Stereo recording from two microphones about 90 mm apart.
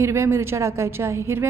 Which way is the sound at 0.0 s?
30° right (ahead or behind).